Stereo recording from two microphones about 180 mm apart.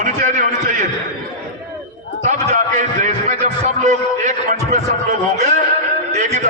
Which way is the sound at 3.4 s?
40° right (ahead or behind).